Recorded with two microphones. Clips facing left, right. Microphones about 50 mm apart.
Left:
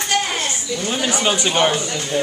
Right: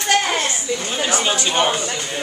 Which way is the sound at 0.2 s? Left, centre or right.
Right.